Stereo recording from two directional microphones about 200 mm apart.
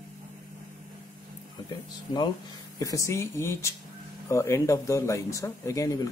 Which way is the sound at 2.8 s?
15° left (ahead or behind).